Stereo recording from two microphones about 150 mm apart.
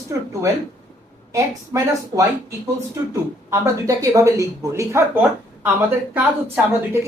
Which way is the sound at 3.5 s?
20° right (ahead or behind).